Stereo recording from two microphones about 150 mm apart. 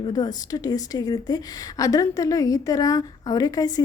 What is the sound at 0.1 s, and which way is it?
A woman's voice, 25° left (ahead or behind).